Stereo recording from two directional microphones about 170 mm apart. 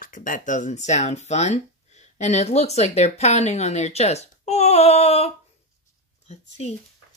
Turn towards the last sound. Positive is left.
turn(degrees=35)  # may be behind; listen again after turning